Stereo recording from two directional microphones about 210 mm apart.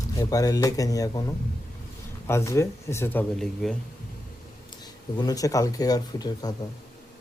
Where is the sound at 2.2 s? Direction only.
15° left (ahead or behind).